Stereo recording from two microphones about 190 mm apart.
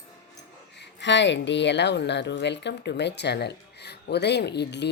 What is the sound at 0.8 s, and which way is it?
Speech, 65° left (ahead or behind).